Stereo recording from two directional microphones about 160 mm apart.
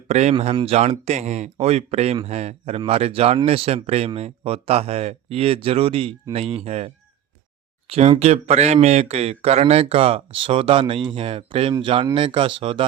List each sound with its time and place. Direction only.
0.1 s speech: 45° right (ahead or behind)